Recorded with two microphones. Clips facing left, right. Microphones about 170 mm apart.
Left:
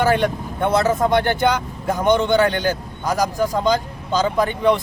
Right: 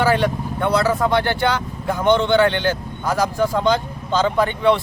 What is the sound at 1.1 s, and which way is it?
Speech, 45° left (ahead or behind).